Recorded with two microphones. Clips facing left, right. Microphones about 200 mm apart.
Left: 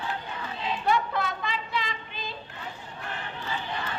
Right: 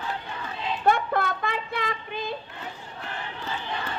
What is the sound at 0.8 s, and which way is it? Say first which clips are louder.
Child singing: right 4 dB; 50° right (ahead or behind).